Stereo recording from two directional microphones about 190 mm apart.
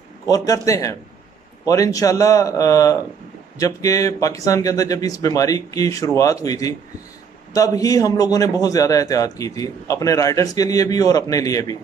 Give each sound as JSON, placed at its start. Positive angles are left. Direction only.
{"t": 0.3, "sound": "a man's voice", "side_deg": 15}